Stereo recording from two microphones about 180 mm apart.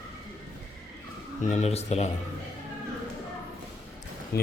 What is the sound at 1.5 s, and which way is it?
Speech, 35° left (ahead or behind).